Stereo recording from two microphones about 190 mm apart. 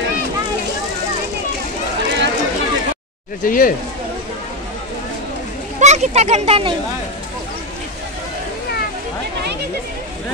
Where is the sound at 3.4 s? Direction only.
45° left (ahead or behind).